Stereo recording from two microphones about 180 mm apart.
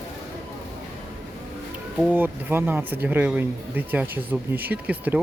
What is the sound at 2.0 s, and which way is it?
Speech, 10° right (ahead or behind).